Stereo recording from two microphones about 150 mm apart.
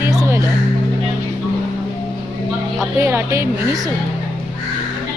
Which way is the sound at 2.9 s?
15° right (ahead or behind).